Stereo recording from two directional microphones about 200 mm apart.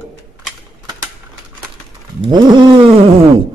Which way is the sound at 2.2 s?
20° right (ahead or behind).